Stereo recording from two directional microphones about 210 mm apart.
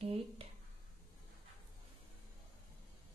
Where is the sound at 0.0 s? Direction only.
30° right (ahead or behind).